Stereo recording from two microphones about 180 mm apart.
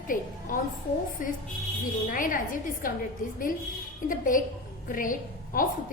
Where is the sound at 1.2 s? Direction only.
50° left (ahead or behind).